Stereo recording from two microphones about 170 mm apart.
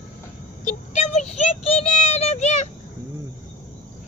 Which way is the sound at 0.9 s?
40° left (ahead or behind).